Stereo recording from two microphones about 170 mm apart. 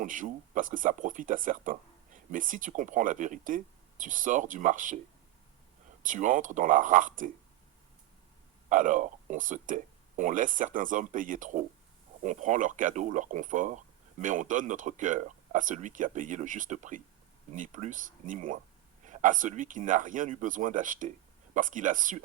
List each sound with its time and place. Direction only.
0.0 s speech: 50° right (ahead or behind)
6.0 s speech: 50° right (ahead or behind)
8.7 s speech: 50° right (ahead or behind)